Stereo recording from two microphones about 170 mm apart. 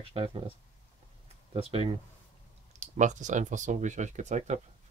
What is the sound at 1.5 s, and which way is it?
Speech, 35° right (ahead or behind).